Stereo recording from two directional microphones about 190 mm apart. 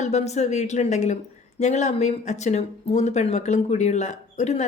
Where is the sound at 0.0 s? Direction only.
35° left (ahead or behind).